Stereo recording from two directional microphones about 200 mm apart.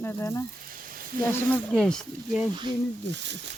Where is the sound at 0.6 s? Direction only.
45° right (ahead or behind).